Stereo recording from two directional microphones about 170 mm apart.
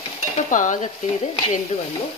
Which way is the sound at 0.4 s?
50° left (ahead or behind).